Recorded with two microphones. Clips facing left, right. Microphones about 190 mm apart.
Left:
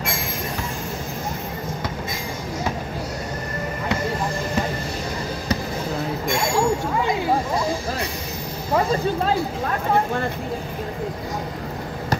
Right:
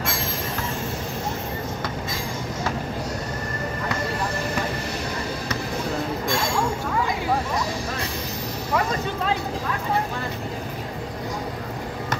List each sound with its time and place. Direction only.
8.7 s speech: 40° left (ahead or behind)